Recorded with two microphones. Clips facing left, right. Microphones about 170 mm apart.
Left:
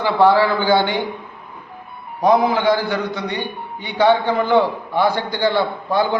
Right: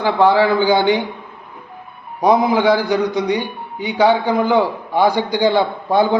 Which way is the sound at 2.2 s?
15° right (ahead or behind).